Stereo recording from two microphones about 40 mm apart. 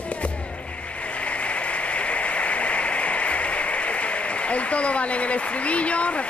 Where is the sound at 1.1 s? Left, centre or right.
Left.